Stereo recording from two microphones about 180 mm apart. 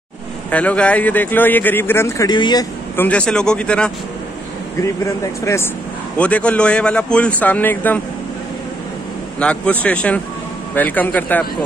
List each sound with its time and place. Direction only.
0.5 s a man's voice: 10° left (ahead or behind); by 2.6 s 25° left (ahead or behind)
3.0 s speech: 5° left (ahead or behind)
5.0 s a man's voice: 15° left (ahead or behind)
9.4 s a man's voice: 5° left (ahead or behind)